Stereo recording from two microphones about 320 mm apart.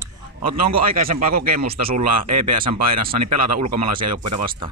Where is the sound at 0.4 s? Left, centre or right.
Right.